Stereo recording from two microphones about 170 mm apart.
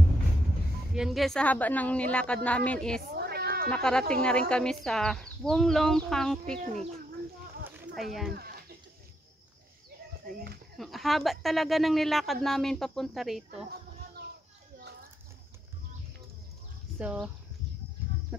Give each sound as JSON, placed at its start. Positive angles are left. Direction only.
{"t": 0.9, "sound": "a woman's voice", "side_deg": 0}
{"t": 3.0, "sound": "cat", "side_deg": -65}
{"t": 3.7, "sound": "speech", "side_deg": 5}
{"t": 7.9, "sound": "speech", "side_deg": 0}
{"t": 8.3, "sound": "chicken", "side_deg": -65}
{"t": 10.8, "sound": "speech", "side_deg": 0}
{"t": 17.0, "sound": "speech", "side_deg": -5}